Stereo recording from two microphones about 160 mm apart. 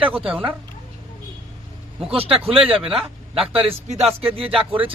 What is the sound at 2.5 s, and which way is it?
Speech, 5° right (ahead or behind).